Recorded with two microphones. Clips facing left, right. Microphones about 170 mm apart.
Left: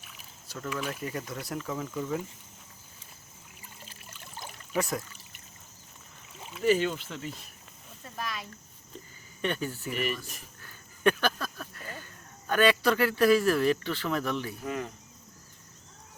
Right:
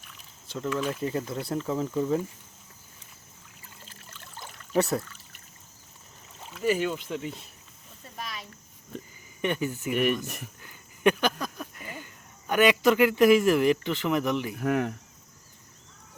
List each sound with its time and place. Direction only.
0.4 s a sound: 25° right (ahead or behind)
0.9 s speech: 25° right (ahead or behind)
3.8 s trickle: 15° left (ahead or behind)
4.7 s speech: 35° right (ahead or behind)
6.6 s speech: 10° right (ahead or behind)
9.4 s speech: 15° right (ahead or behind)
9.9 s speech: 60° right (ahead or behind)
10.6 s a sound: 15° right (ahead or behind)
12.5 s speech: 15° right (ahead or behind)
14.5 s speech: 65° right (ahead or behind)